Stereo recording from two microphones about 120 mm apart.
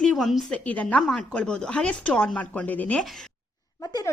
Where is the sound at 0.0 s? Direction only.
5° left (ahead or behind).